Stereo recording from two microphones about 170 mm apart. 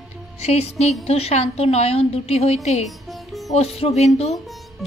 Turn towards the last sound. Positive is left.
turn(degrees=40)  # may be behind; listen again after turning